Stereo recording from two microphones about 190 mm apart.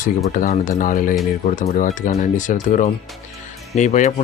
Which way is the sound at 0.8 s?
45° left (ahead or behind).